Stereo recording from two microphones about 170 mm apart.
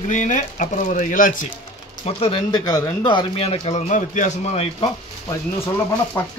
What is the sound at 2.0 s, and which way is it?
Speech, 35° left (ahead or behind).